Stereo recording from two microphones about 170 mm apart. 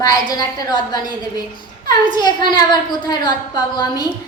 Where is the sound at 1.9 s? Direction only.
25° left (ahead or behind).